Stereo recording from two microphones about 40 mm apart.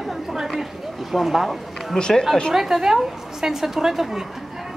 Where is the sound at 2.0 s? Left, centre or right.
Centre.